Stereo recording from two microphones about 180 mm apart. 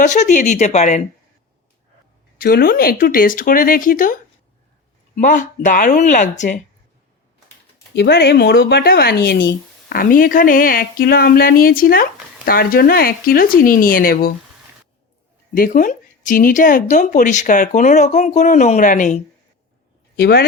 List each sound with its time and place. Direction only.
0.0 s speech: 40° left (ahead or behind)
2.4 s speech: 55° left (ahead or behind)
5.2 s speech: 45° left (ahead or behind)
7.9 s speech: 70° left (ahead or behind)
15.5 s speech: 45° left (ahead or behind)
20.1 s speech: 65° left (ahead or behind)